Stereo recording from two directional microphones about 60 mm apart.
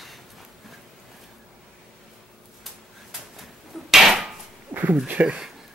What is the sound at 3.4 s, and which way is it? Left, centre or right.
Hammer, centre.